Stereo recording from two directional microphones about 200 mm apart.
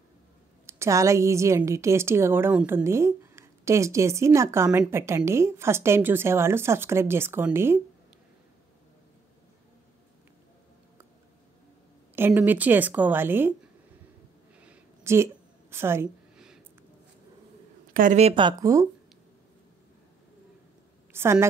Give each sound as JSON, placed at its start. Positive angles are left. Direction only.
{"t": 0.7, "sound": "a woman's voice", "side_deg": -15}
{"t": 12.2, "sound": "a woman's voice", "side_deg": -10}
{"t": 14.6, "sound": "a sound", "side_deg": -10}
{"t": 17.9, "sound": "speech", "side_deg": -40}
{"t": 21.1, "sound": "a woman's voice", "side_deg": -10}